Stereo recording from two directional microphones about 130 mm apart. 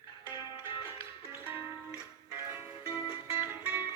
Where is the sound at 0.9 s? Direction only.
20° right (ahead or behind).